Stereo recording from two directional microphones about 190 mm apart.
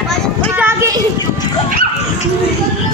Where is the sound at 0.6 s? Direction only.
15° right (ahead or behind).